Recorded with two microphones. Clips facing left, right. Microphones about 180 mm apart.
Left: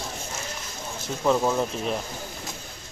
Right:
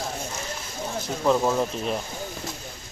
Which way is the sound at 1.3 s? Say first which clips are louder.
Right 1 dB; centre (ahead or behind).